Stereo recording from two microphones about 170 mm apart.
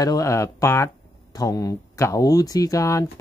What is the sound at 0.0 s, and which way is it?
A man's voice, 20° left (ahead or behind).